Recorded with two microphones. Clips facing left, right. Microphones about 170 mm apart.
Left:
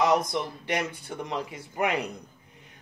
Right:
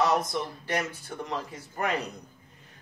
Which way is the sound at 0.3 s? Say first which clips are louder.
Left 1 dB; 15° left (ahead or behind).